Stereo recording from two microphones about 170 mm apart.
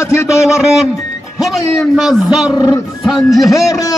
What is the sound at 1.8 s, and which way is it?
Speech, centre (ahead or behind).